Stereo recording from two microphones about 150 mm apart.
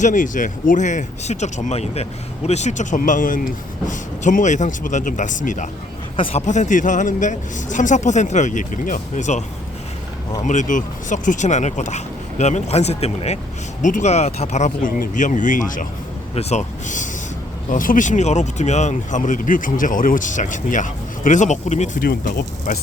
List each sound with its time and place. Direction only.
0.0 s speech: 60° left (ahead or behind)
10.4 s speech: 55° left (ahead or behind)
16.3 s speech: 45° left (ahead or behind)
22.0 s speech: 85° left